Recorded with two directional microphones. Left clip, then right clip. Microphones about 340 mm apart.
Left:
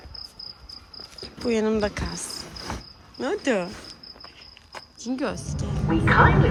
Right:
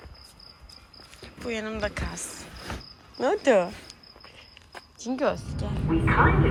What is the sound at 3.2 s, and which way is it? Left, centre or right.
Speech, centre.